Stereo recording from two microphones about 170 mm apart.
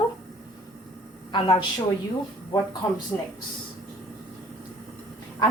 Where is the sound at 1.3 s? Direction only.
25° left (ahead or behind).